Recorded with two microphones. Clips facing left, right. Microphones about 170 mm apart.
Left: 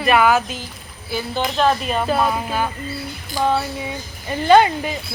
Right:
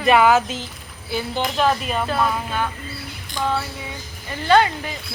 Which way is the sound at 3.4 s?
20° left (ahead or behind).